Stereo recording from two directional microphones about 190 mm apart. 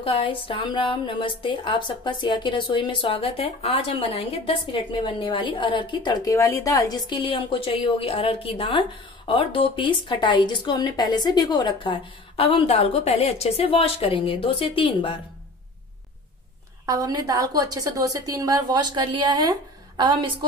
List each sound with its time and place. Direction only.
0.0 s a woman's voice: 30° left (ahead or behind)
16.8 s a woman's voice: 20° right (ahead or behind)